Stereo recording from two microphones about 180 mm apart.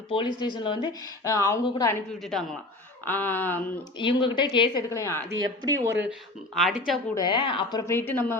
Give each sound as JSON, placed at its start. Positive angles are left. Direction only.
{"t": 0.1, "sound": "a woman's voice", "side_deg": 25}
{"t": 3.1, "sound": "speech", "side_deg": 10}
{"t": 3.9, "sound": "a woman's voice", "side_deg": 25}
{"t": 4.9, "sound": "speech", "side_deg": 15}
{"t": 5.4, "sound": "speech", "side_deg": -20}
{"t": 6.5, "sound": "speech", "side_deg": 0}
{"t": 7.2, "sound": "a woman's voice", "side_deg": 25}